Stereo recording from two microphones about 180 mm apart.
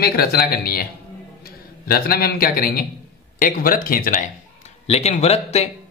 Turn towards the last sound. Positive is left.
turn(degrees=35)  # may be behind; listen again after turning